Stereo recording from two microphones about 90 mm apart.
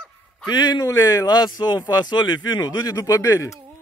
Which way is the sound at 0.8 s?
35° left (ahead or behind).